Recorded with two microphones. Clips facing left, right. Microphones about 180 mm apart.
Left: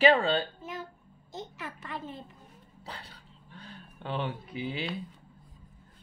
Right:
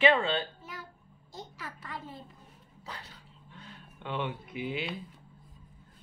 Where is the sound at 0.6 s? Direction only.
25° left (ahead or behind).